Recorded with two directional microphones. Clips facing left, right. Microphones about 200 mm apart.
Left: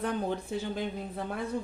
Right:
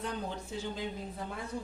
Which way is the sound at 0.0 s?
55° left (ahead or behind).